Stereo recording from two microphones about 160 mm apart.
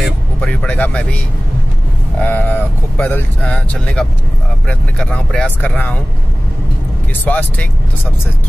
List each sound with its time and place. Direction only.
0.0 s vehicle: 5° left (ahead or behind)
2.1 s speech: 10° left (ahead or behind)
7.2 s speech: 10° left (ahead or behind)